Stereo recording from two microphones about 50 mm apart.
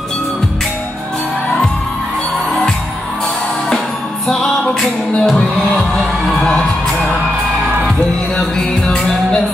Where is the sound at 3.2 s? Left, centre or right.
Centre.